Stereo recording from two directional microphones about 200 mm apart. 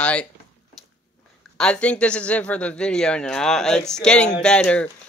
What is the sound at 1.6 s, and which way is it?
Speech, 5° left (ahead or behind).